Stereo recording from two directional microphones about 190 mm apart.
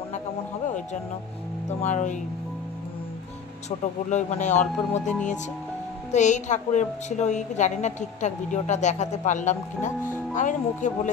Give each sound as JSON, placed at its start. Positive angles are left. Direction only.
{"t": 1.7, "sound": "a woman's voice", "side_deg": 40}
{"t": 4.1, "sound": "a woman's voice", "side_deg": 40}